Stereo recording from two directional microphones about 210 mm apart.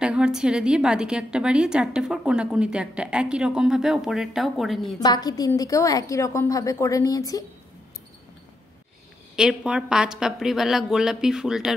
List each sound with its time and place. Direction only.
0.0 s a woman's voice: 5° right (ahead or behind)
5.0 s a woman's voice: 20° left (ahead or behind)
9.3 s a woman's voice: 5° right (ahead or behind)